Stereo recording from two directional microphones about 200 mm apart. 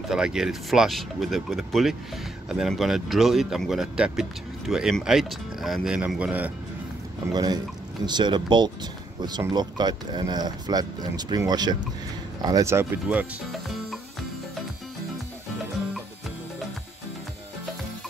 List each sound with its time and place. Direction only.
0.1 s speech: 5° right (ahead or behind)
7.3 s speech: 20° right (ahead or behind); by 13.9 s 5° right (ahead or behind)